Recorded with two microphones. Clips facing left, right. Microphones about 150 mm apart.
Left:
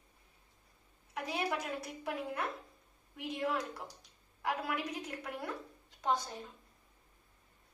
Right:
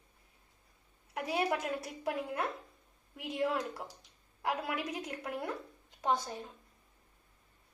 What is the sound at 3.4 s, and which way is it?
Speech, 25° right (ahead or behind).